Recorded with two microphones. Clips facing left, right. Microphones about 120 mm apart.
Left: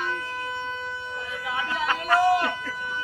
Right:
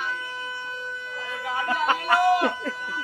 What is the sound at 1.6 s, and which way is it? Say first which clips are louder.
Speech: right 4 dB; 45° right (ahead or behind).